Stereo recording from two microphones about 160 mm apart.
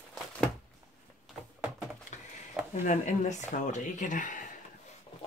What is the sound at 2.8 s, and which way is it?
Speech, 50° left (ahead or behind).